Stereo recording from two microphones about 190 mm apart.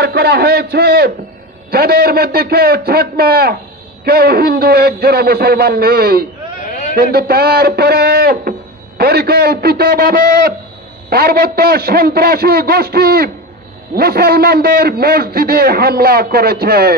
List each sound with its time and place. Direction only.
0.0 s a man's voice: 60° right (ahead or behind)
6.7 s a sound: 45° left (ahead or behind)
7.0 s a man's voice: 55° right (ahead or behind)